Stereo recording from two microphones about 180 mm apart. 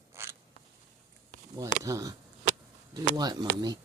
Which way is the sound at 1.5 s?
15° right (ahead or behind).